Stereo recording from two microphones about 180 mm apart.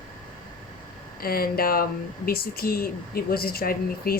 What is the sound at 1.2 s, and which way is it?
Speech, 55° left (ahead or behind).